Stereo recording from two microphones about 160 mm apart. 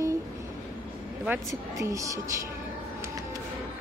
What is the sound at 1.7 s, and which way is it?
Speech, 20° right (ahead or behind).